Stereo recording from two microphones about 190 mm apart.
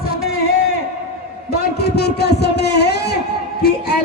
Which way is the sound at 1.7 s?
60° left (ahead or behind).